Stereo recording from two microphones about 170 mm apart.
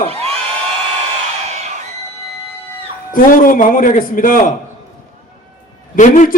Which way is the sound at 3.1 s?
55° left (ahead or behind).